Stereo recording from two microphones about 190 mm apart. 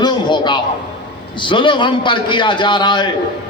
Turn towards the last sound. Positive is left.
turn(degrees=25)  # may be behind; listen again after turning